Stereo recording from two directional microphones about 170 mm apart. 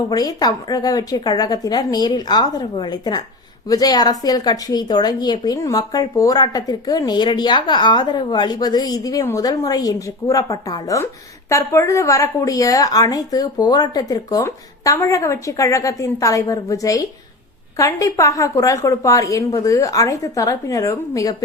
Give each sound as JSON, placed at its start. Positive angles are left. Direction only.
{"t": 0.1, "sound": "a woman's voice", "side_deg": 20}